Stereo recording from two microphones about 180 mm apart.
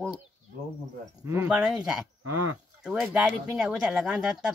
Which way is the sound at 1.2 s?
15° right (ahead or behind).